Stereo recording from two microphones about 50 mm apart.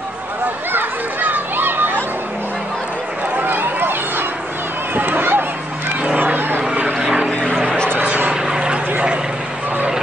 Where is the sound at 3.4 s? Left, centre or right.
Right.